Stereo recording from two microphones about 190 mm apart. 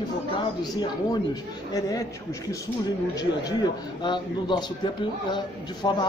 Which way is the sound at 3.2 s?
20° left (ahead or behind).